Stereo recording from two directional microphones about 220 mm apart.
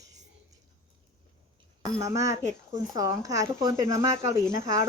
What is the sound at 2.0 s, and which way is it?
Speech, 15° right (ahead or behind).